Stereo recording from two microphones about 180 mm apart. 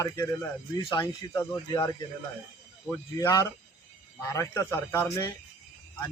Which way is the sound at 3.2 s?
15° left (ahead or behind).